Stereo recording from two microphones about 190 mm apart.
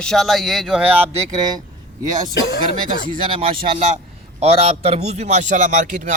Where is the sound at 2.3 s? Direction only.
65° left (ahead or behind).